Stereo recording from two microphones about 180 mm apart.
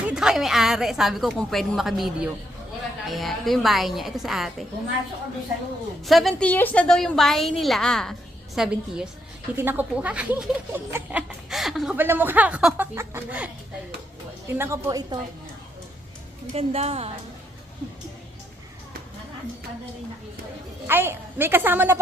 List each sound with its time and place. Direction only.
0.1 s a woman's voice: 5° right (ahead or behind)
6.1 s a woman's voice: centre (ahead or behind)
14.5 s a woman's voice: 15° right (ahead or behind)
16.6 s a woman's voice: 35° right (ahead or behind)
20.8 s a woman's voice: 15° right (ahead or behind)